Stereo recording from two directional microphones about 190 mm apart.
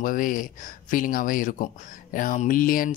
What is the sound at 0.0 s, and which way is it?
Speech, 45° left (ahead or behind).